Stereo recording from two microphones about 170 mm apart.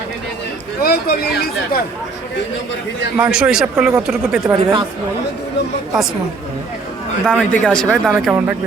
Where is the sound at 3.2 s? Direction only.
5° right (ahead or behind).